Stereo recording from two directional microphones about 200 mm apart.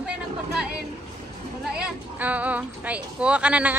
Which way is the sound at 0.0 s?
5° right (ahead or behind).